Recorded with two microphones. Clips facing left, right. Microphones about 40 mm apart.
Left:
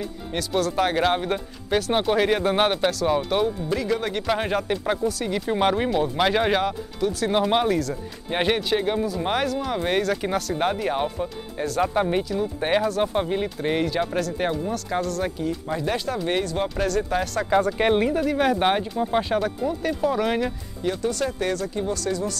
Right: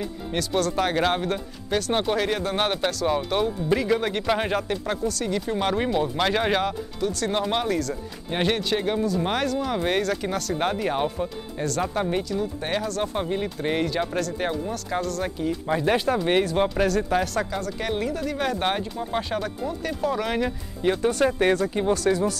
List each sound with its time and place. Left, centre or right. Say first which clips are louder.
0.3 s speech: even; centre
3.6 s speech: right 2 dB; centre
4.6 s speech: left 3 dB; centre
5.8 s speech: left 1 dB; centre
15.7 s speech: right 6 dB; centre
16.6 s speech: right 2 dB; centre
17.6 s speech: left 8 dB; left; by 20.5 s centre
20.8 s speech: right 3 dB; right